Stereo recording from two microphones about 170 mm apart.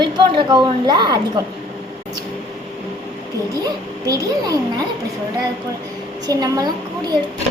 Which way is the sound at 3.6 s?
20° right (ahead or behind).